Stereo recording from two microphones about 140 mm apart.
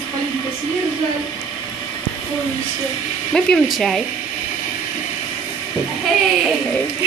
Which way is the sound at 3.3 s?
5° left (ahead or behind).